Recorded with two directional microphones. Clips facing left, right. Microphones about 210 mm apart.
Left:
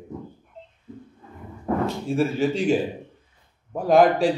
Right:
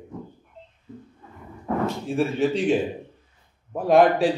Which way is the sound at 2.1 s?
Centre (ahead or behind).